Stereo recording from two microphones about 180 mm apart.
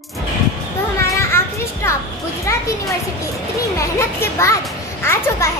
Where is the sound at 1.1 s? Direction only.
15° left (ahead or behind).